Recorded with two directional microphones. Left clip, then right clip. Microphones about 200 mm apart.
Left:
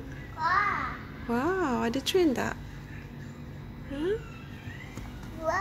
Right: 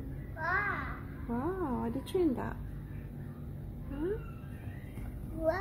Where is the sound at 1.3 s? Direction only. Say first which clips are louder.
Left 8 dB; 20° left (ahead or behind).